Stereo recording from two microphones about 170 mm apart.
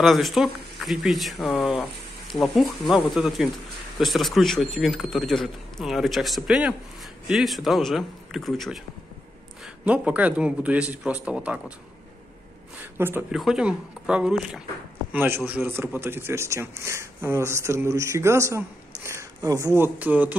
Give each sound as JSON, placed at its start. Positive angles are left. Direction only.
{"t": 0.0, "sound": "speech", "side_deg": 0}
{"t": 9.8, "sound": "speech", "side_deg": -10}
{"t": 12.9, "sound": "speech", "side_deg": -15}